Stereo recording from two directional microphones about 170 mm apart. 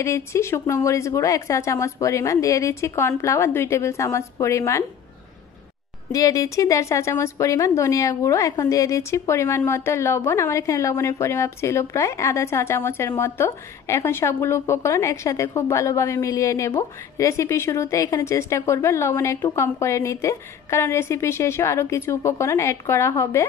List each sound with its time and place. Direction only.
0.0 s a woman's voice: 15° left (ahead or behind)
6.1 s a woman's voice: 20° left (ahead or behind)